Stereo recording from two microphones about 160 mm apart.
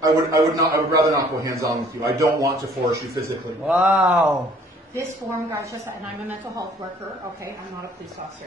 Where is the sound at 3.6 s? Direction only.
5° right (ahead or behind).